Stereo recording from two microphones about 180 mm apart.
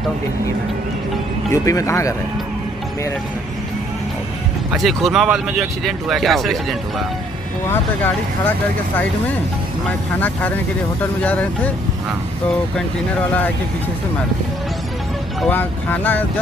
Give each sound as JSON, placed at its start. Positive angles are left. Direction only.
{"t": 1.5, "sound": "speech", "side_deg": 15}
{"t": 4.7, "sound": "speech", "side_deg": 0}
{"t": 9.8, "sound": "speech", "side_deg": 10}
{"t": 15.4, "sound": "speech", "side_deg": 10}